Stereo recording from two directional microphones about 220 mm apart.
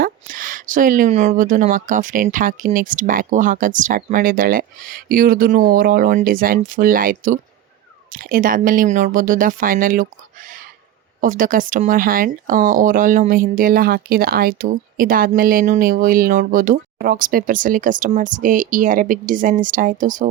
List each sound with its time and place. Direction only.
0.0 s speech: 40° right (ahead or behind)